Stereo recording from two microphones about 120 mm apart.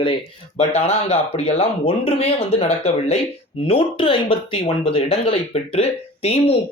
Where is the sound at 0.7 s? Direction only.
60° left (ahead or behind).